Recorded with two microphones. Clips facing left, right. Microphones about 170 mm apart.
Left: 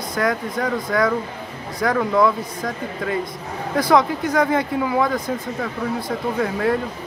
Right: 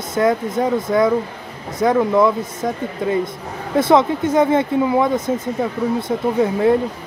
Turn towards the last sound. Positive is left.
turn(degrees=-25)  # may be behind; listen again after turning